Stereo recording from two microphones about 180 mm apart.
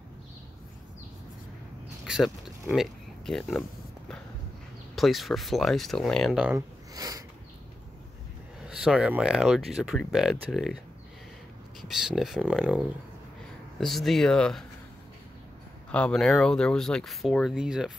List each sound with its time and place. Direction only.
2.0 s oink: centre (ahead or behind)
2.7 s speech: centre (ahead or behind)
4.9 s speech: centre (ahead or behind)
6.5 s a sound: 20° right (ahead or behind)
8.6 s speech: 5° right (ahead or behind)
12.2 s speech: 5° right (ahead or behind)
15.9 s speech: 5° left (ahead or behind)